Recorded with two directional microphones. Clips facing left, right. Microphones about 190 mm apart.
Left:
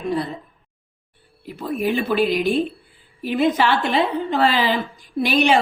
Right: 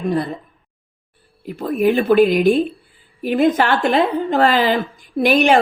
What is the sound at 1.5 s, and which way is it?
A woman's voice, 50° right (ahead or behind).